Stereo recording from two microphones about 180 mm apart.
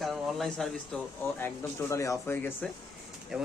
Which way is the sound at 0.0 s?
Centre (ahead or behind).